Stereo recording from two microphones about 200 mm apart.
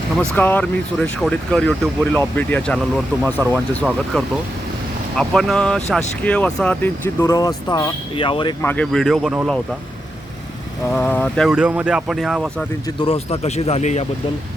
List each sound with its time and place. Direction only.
0.2 s speech: 10° left (ahead or behind)
5.1 s speech: centre (ahead or behind); by 8.5 s 25° left (ahead or behind)
8.6 s speech: 5° left (ahead or behind)
10.9 s speech: 5° left (ahead or behind)
13.0 s speech: 30° left (ahead or behind)